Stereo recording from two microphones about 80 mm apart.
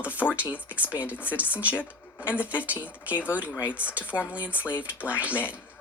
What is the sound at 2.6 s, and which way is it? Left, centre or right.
Speech, centre.